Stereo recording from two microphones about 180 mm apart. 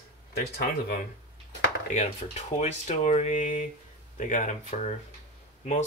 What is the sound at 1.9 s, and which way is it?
Speech, 40° left (ahead or behind).